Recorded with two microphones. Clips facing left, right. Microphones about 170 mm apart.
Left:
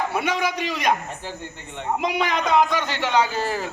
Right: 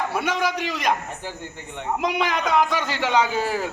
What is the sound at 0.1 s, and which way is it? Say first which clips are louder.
Speech: even; centre (ahead or behind).